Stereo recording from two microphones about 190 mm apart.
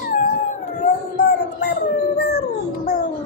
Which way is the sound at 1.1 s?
55° left (ahead or behind).